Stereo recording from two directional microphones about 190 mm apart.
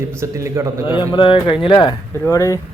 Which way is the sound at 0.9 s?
25° left (ahead or behind).